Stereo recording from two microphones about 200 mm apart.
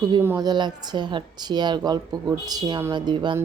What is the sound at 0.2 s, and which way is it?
A woman's voice, 15° right (ahead or behind).